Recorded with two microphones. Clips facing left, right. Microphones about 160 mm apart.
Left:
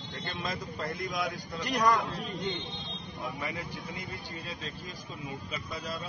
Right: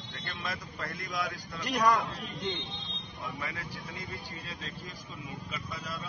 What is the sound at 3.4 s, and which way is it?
Speech, 20° left (ahead or behind).